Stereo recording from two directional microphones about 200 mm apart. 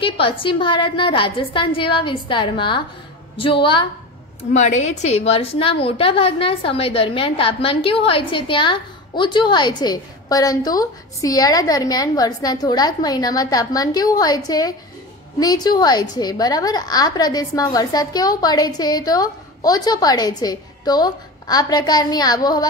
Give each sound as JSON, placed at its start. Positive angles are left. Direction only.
{"t": 0.0, "sound": "a woman's voice", "side_deg": 25}